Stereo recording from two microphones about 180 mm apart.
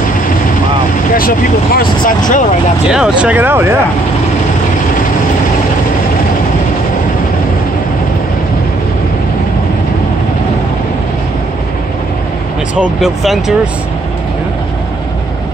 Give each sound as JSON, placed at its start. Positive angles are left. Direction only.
{"t": 1.1, "sound": "speech", "side_deg": 55}
{"t": 2.9, "sound": "speech", "side_deg": -5}
{"t": 12.7, "sound": "speech", "side_deg": -5}